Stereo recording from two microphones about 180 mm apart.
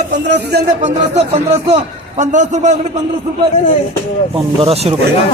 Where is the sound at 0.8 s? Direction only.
40° right (ahead or behind).